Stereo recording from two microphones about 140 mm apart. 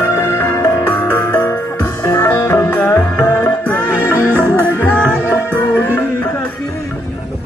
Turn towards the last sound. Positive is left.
turn(degrees=10)  # may be behind; listen again after turning